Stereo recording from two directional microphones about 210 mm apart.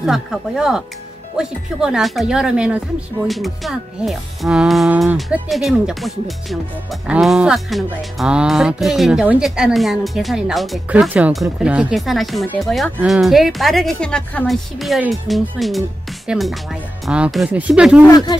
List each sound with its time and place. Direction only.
0.0 s speech: centre (ahead or behind)
18.0 s speech: 15° left (ahead or behind)